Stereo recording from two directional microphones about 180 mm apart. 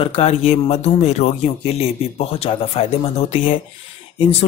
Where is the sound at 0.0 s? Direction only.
35° left (ahead or behind).